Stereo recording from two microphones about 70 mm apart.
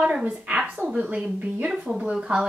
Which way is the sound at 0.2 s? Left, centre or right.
Centre.